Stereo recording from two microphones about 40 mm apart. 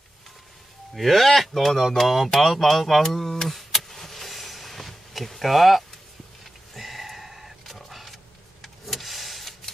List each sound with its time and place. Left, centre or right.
0.9 s speech: centre
2.0 s a sound: centre
8.8 s vehicle: centre